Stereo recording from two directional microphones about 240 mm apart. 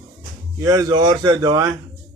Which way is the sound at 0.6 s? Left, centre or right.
Centre.